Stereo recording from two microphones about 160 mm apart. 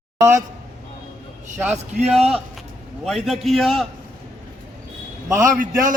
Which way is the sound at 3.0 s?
Centre (ahead or behind).